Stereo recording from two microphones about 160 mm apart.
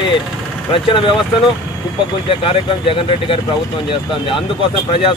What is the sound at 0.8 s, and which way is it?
Speech, 30° left (ahead or behind).